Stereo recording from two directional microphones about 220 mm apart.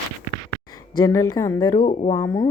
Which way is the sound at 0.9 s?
15° left (ahead or behind).